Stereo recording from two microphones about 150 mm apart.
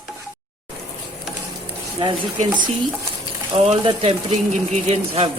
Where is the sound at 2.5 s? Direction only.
30° right (ahead or behind).